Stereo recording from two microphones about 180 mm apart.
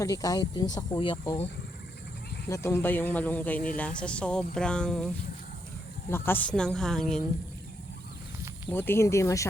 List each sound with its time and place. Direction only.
0.0 s speech: 20° left (ahead or behind)
2.5 s speech: 15° left (ahead or behind)
8.7 s speech: 10° left (ahead or behind)